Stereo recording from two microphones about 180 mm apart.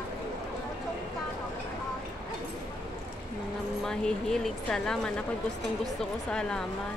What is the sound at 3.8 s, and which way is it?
Speech, 5° left (ahead or behind).